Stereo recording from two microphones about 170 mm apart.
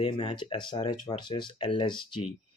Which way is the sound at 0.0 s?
30° left (ahead or behind).